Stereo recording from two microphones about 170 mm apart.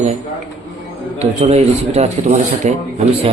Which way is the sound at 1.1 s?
40° right (ahead or behind).